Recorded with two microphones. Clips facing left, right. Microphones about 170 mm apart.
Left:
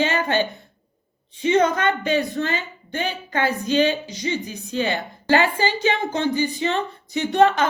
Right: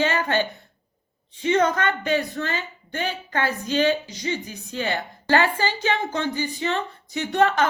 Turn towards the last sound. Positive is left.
turn(degrees=20)  # may be behind; listen again after turning